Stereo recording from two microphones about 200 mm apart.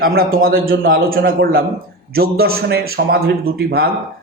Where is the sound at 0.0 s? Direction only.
50° right (ahead or behind).